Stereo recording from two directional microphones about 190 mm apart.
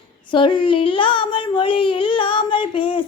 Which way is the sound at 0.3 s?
25° left (ahead or behind).